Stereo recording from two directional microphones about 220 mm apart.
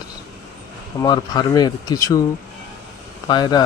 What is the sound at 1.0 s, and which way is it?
Speech, 15° left (ahead or behind).